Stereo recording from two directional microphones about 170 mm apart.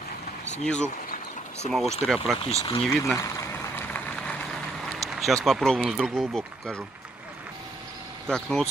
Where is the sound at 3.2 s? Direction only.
15° left (ahead or behind); by 6.8 s centre (ahead or behind).